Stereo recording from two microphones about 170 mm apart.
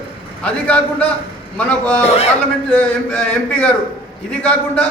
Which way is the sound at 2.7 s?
10° left (ahead or behind).